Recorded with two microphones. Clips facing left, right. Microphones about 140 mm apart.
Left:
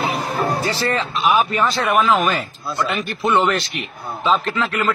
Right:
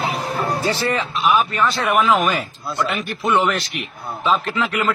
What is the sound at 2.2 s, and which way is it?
Speech, 15° right (ahead or behind).